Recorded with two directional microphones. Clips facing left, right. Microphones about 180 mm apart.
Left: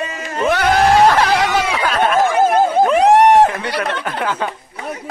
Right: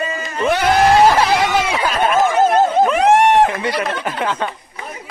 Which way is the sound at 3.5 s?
Centre (ahead or behind).